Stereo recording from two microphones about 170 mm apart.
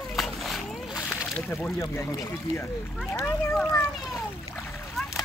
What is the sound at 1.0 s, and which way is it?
Slosh, 10° left (ahead or behind).